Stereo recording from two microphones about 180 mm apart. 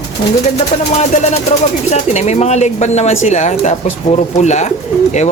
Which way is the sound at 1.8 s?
40° left (ahead or behind).